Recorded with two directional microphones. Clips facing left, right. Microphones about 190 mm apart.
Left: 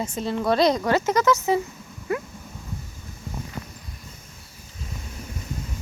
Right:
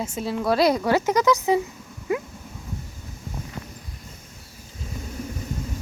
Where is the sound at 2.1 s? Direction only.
15° right (ahead or behind).